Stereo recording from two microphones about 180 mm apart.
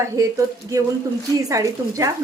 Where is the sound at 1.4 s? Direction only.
15° right (ahead or behind).